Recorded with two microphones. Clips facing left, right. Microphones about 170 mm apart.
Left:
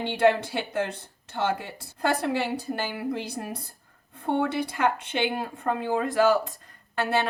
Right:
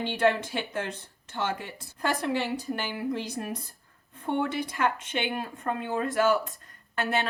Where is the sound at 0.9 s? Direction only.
35° left (ahead or behind).